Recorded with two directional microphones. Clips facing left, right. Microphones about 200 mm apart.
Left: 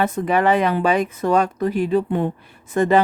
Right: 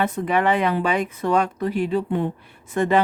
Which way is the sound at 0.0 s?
40° left (ahead or behind).